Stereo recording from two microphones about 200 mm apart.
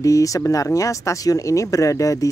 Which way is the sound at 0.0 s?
15° left (ahead or behind).